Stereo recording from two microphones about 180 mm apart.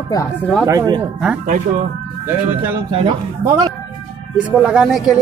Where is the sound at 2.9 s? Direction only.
30° right (ahead or behind).